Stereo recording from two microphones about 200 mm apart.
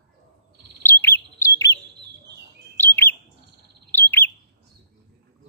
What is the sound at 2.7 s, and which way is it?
Bird, 10° left (ahead or behind).